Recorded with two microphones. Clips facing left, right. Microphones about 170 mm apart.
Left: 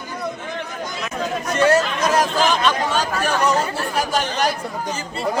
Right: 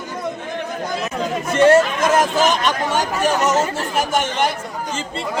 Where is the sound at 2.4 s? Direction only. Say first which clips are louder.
Right 1 dB; 15° right (ahead or behind).